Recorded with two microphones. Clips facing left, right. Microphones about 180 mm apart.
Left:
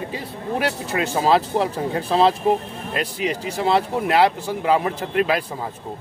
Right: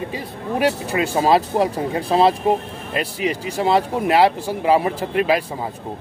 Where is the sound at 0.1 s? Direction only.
10° right (ahead or behind).